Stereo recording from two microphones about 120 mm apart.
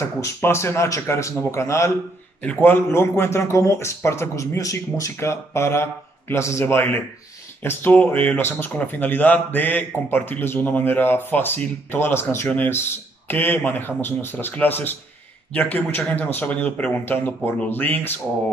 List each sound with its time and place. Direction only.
0.2 s a man's voice: 20° left (ahead or behind)